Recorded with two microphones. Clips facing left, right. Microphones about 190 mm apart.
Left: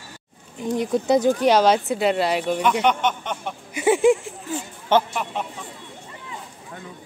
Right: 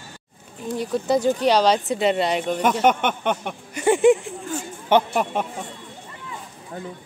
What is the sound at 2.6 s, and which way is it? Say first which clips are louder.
Speech: right 3 dB; 45° right (ahead or behind).